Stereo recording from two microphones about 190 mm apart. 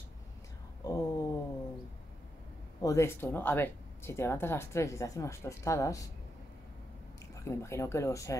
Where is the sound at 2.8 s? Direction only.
15° left (ahead or behind).